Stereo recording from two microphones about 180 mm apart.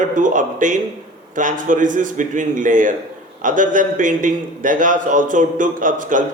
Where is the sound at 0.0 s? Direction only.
45° right (ahead or behind).